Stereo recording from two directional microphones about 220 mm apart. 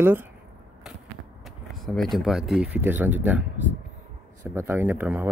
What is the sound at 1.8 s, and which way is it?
Speech, centre (ahead or behind).